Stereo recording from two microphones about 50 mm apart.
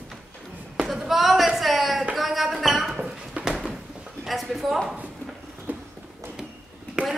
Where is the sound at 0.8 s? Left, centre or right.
Centre.